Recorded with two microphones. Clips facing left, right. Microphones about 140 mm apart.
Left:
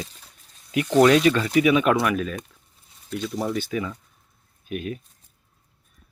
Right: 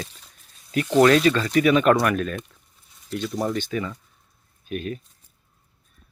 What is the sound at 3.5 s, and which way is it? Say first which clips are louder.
Speech: even; 5° left (ahead or behind).